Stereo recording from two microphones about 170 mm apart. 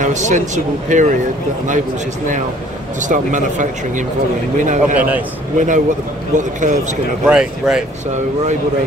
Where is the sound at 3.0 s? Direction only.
50° right (ahead or behind).